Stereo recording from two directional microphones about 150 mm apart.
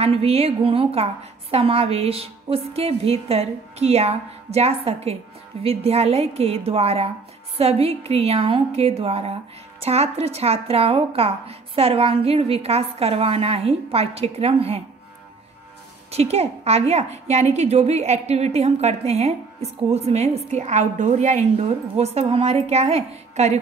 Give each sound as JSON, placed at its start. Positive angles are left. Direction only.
{"t": 0.0, "sound": "a woman's voice", "side_deg": -40}
{"t": 16.1, "sound": "a woman's voice", "side_deg": -45}